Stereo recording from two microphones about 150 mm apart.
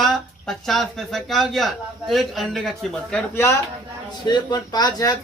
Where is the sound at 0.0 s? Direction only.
Centre (ahead or behind).